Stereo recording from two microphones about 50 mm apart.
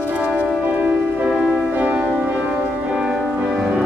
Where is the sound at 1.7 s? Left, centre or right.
Right.